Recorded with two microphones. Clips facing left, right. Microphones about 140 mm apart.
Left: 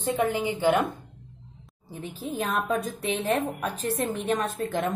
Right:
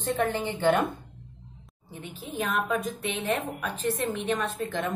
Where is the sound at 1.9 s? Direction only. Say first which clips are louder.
Left 5 dB; 35° left (ahead or behind).